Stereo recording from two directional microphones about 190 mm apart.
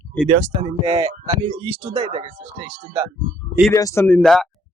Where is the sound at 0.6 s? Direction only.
20° right (ahead or behind).